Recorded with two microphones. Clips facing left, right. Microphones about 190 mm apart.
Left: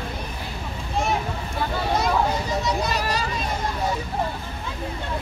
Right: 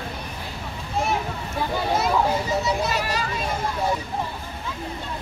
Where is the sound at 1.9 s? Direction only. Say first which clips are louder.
Right 1 dB; 5° right (ahead or behind).